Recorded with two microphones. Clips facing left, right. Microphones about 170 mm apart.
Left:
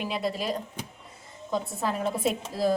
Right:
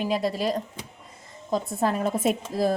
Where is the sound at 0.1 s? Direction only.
40° right (ahead or behind).